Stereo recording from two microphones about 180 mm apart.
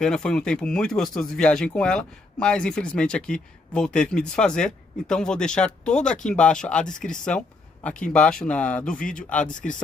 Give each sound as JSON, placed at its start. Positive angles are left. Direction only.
{"t": 0.0, "sound": "speech", "side_deg": 5}
{"t": 9.5, "sound": "speech", "side_deg": 45}